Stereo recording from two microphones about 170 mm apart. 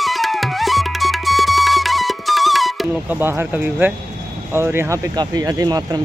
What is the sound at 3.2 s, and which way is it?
Speech, 10° right (ahead or behind).